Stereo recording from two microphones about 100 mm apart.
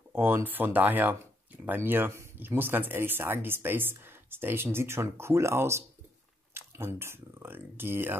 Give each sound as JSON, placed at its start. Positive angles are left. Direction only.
{"t": 0.1, "sound": "speech", "side_deg": -20}